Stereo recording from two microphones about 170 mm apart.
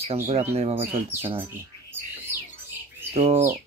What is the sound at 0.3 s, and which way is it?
A man's voice, 40° right (ahead or behind).